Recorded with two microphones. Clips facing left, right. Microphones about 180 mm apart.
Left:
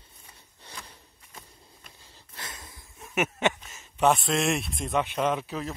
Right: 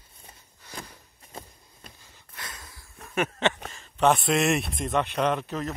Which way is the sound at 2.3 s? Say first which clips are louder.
Even; 25° left (ahead or behind).